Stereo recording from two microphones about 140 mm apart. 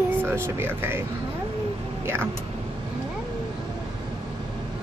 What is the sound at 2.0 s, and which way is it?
Speech, 15° right (ahead or behind).